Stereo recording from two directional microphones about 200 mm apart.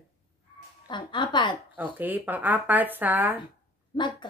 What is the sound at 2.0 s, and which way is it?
A woman's voice, 10° right (ahead or behind).